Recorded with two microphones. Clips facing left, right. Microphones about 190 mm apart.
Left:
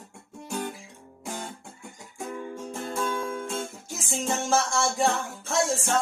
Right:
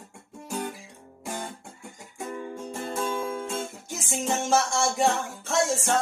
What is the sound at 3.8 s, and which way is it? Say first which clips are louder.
Music: right 1 dB; 20° right (ahead or behind).